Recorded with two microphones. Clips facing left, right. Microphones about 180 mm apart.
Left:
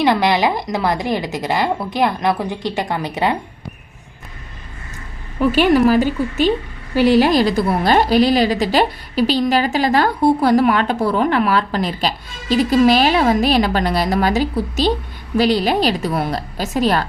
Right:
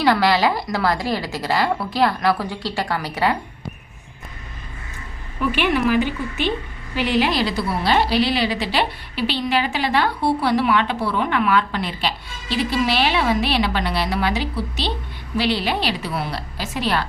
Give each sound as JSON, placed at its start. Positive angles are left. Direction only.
{"t": 0.0, "sound": "a woman's voice", "side_deg": 20}
{"t": 5.4, "sound": "a woman's voice", "side_deg": 40}